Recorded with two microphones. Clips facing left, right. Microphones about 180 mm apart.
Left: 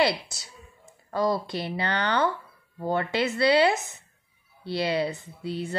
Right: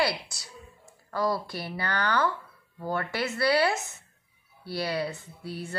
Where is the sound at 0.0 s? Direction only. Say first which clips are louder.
Left 4 dB; 20° left (ahead or behind).